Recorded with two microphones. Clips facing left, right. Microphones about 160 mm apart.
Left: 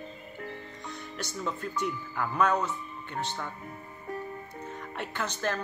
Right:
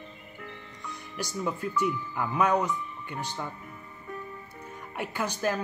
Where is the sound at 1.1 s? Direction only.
10° right (ahead or behind).